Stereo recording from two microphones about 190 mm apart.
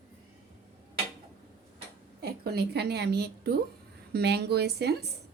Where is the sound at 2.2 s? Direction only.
55° right (ahead or behind).